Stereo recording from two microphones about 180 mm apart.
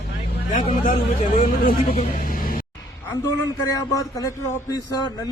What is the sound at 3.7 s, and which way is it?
Speech, 20° left (ahead or behind).